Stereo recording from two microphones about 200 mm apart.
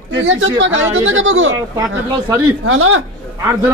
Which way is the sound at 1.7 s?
15° right (ahead or behind).